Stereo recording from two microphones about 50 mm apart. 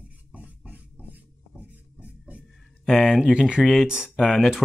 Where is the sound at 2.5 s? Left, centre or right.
Centre.